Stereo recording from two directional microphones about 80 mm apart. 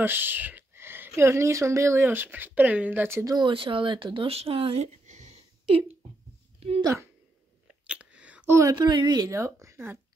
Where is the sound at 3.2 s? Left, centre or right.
Right.